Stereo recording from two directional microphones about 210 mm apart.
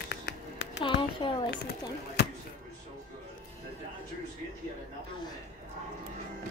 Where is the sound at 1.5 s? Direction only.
50° left (ahead or behind).